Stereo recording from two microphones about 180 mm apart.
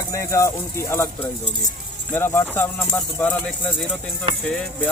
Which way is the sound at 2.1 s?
10° left (ahead or behind).